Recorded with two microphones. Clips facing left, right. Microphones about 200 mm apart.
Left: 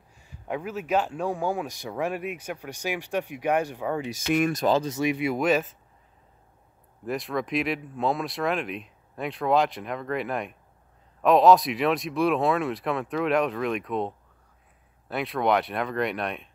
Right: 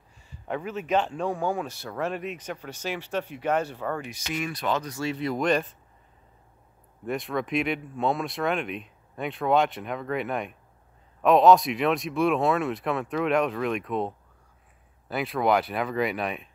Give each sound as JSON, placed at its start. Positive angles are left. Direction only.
{"t": 0.2, "sound": "speech", "side_deg": 10}
{"t": 4.1, "sound": "speech", "side_deg": 50}
{"t": 4.7, "sound": "speech", "side_deg": 20}
{"t": 7.1, "sound": "speech", "side_deg": 0}